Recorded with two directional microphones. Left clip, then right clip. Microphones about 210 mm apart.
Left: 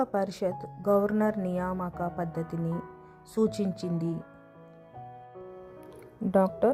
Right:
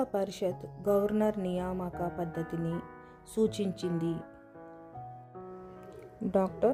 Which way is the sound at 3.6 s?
35° left (ahead or behind).